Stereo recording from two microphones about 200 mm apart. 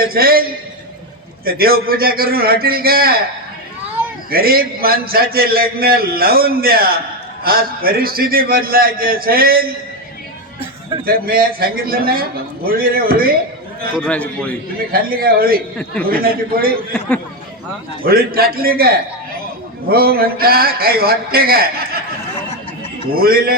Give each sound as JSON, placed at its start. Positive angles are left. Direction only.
{"t": 0.0, "sound": "a man's voice", "side_deg": -50}
{"t": 1.5, "sound": "a man's voice", "side_deg": -50}
{"t": 4.3, "sound": "a man's voice", "side_deg": -50}
{"t": 11.0, "sound": "a man's voice", "side_deg": -45}
{"t": 14.0, "sound": "a man's voice", "side_deg": 5}
{"t": 14.9, "sound": "a man's voice", "side_deg": -50}
{"t": 18.0, "sound": "a man's voice", "side_deg": -50}
{"t": 23.1, "sound": "a man's voice", "side_deg": -50}